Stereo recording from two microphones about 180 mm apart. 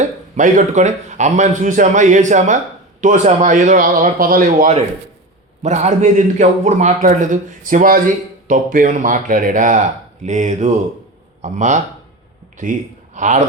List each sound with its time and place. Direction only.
0.0 s speech: 45° right (ahead or behind)
13.1 s a man's voice: 45° right (ahead or behind)